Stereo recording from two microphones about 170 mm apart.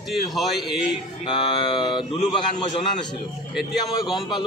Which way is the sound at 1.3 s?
30° left (ahead or behind).